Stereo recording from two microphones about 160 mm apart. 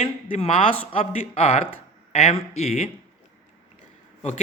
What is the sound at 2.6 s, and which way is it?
Speech, 40° left (ahead or behind).